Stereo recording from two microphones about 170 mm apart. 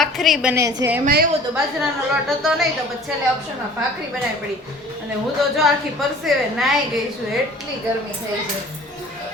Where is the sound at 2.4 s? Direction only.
Centre (ahead or behind).